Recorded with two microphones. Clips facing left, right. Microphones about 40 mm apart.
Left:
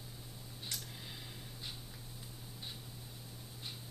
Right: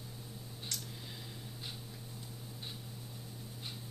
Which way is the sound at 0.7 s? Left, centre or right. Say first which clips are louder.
Right 1 dB; centre.